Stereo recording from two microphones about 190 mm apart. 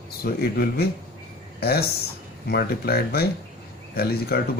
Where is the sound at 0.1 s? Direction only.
55° left (ahead or behind).